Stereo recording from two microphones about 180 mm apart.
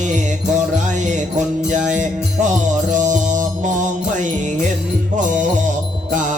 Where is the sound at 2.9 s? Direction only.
45° right (ahead or behind).